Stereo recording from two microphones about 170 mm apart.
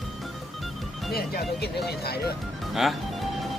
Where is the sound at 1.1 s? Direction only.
65° left (ahead or behind).